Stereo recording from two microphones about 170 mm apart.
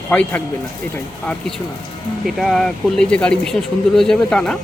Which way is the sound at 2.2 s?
Centre (ahead or behind).